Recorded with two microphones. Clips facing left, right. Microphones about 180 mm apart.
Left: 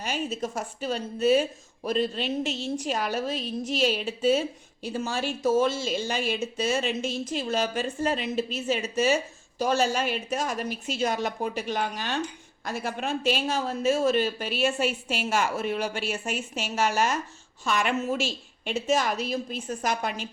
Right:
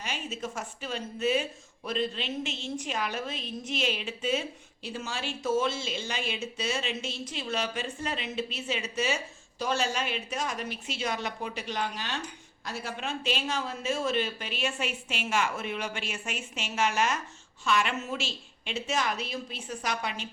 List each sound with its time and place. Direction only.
0.0 s speech: 40° left (ahead or behind)